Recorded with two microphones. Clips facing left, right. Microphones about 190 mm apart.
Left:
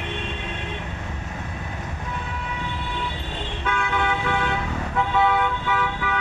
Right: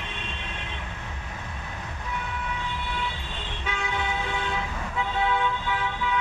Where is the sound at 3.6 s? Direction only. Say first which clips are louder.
Left 6 dB; 60° left (ahead or behind).